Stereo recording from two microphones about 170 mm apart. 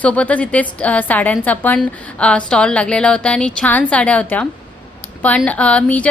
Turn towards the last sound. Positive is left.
turn(degrees=5)  # may be behind; listen again after turning